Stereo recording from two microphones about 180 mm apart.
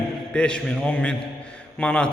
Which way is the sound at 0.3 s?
5° left (ahead or behind).